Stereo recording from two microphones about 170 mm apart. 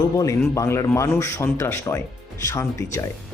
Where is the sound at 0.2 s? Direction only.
20° left (ahead or behind).